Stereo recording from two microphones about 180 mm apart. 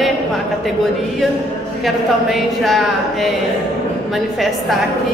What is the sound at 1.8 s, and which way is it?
A woman's voice, centre (ahead or behind).